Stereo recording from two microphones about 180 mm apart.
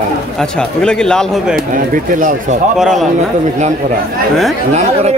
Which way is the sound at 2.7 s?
5° right (ahead or behind).